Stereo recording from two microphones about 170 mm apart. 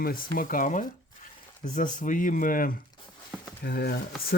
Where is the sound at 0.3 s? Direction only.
55° left (ahead or behind).